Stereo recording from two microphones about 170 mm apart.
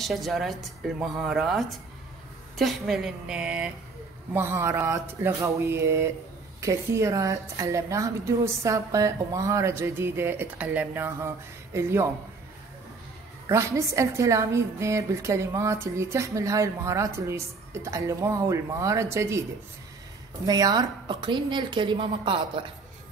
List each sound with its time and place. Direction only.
0.0 s a woman's voice: centre (ahead or behind); by 12.1 s 15° right (ahead or behind)
13.5 s a woman's voice: 15° right (ahead or behind)
20.4 s a woman's voice: 20° right (ahead or behind)